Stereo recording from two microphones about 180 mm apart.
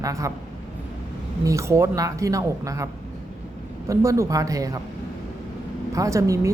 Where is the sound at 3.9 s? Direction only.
15° right (ahead or behind).